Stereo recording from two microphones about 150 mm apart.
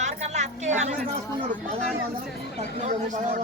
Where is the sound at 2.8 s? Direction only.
50° right (ahead or behind).